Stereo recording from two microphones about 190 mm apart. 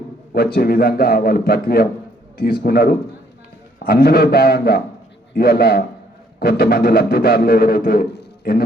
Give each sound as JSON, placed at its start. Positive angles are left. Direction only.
{"t": 0.3, "sound": "a man's voice", "side_deg": 50}